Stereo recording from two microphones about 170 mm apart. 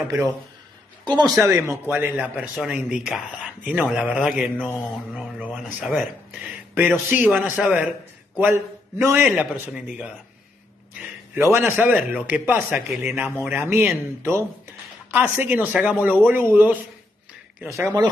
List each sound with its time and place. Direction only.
1.0 s a man's voice: 25° right (ahead or behind); by 10.1 s 5° right (ahead or behind)
11.5 s a man's voice: 10° right (ahead or behind)
17.7 s speech: 20° right (ahead or behind)